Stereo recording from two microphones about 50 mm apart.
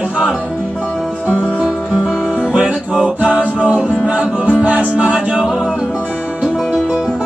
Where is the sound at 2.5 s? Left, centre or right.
Centre.